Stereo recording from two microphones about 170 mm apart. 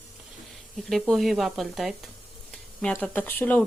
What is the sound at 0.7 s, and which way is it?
A woman's voice, centre (ahead or behind).